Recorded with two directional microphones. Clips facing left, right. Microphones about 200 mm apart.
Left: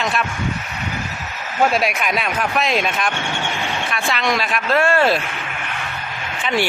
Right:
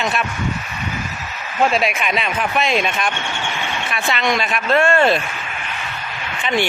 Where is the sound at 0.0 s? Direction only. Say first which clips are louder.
Even; centre (ahead or behind).